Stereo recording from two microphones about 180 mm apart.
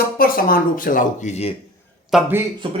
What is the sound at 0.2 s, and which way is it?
Speech, 55° left (ahead or behind).